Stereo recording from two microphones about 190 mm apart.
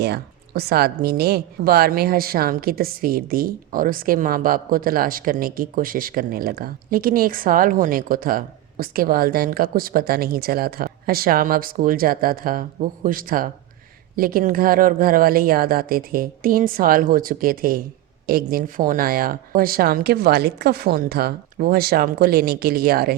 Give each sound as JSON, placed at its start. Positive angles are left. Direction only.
{"t": 0.0, "sound": "a woman's voice", "side_deg": -55}